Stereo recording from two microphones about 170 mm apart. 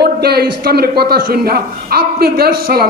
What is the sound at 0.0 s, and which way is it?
A man's voice, 70° right (ahead or behind).